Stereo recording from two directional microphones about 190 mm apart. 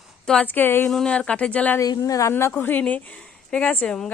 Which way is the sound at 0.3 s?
10° left (ahead or behind).